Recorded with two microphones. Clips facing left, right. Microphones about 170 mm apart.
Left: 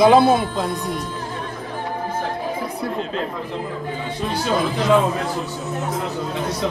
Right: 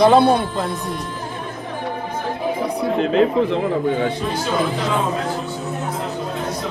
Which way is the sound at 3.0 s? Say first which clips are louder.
Right 10 dB; 75° right (ahead or behind).